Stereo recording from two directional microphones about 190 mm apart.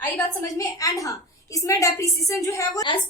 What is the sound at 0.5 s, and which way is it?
A woman's voice, 15° left (ahead or behind).